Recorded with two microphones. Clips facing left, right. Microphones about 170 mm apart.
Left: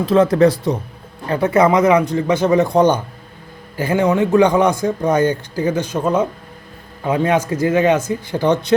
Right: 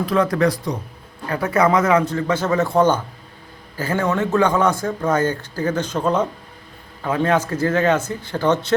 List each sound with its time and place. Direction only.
0.0 s speech: 25° left (ahead or behind)